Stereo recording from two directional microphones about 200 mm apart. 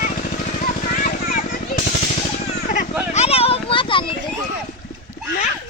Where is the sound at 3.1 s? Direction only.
30° left (ahead or behind).